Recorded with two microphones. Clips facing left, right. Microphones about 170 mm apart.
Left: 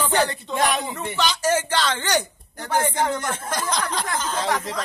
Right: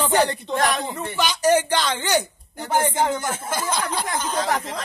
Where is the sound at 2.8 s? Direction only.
20° right (ahead or behind).